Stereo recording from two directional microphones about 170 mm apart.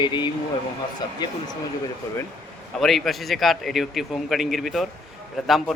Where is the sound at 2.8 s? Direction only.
Centre (ahead or behind).